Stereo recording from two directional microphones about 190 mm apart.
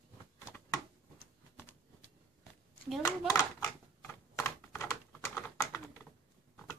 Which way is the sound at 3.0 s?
15° left (ahead or behind).